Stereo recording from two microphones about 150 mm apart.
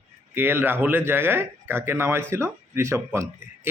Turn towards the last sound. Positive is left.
turn(degrees=-20)  # may be behind; listen again after turning